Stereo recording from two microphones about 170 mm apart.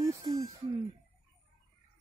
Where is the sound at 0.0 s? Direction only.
20° right (ahead or behind).